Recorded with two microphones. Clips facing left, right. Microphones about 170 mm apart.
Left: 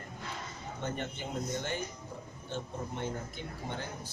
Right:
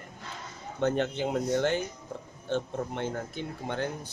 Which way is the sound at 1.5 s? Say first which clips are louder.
Right 9 dB; 75° right (ahead or behind).